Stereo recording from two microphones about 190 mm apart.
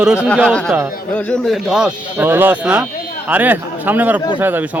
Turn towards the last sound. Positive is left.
turn(degrees=-10)  # may be behind; listen again after turning